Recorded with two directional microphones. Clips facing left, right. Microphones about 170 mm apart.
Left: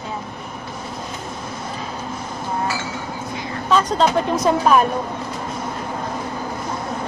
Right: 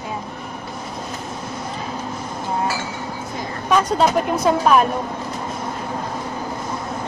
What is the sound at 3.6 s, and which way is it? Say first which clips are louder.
Speech: even; 10° right (ahead or behind).